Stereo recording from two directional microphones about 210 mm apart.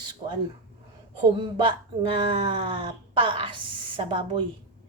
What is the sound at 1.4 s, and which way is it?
Speech, 20° right (ahead or behind).